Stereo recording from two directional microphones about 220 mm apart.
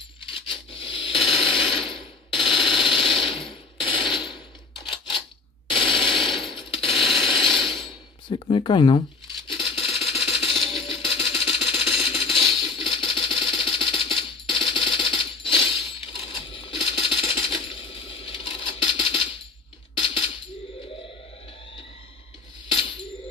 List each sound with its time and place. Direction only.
0.3 s coin: 25° left (ahead or behind)
4.1 s a sound: 20° left (ahead or behind)
6.2 s mechanisms: 25° left (ahead or behind)
7.2 s ratchet: 25° left (ahead or behind)
8.3 s speech: 25° left (ahead or behind)
9.5 s a sound: 25° left (ahead or behind)
10.6 s music: 25° left (ahead or behind)
16.2 s coin: 25° left (ahead or behind)